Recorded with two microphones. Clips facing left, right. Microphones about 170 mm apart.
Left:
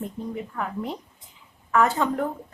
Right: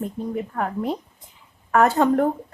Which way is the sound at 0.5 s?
50° right (ahead or behind).